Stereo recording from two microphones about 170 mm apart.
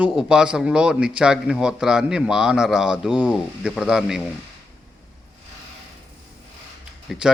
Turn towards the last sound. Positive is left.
turn(degrees=0)  # may be behind; listen again after turning